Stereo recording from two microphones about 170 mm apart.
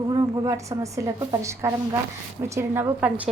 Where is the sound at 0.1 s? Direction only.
20° right (ahead or behind).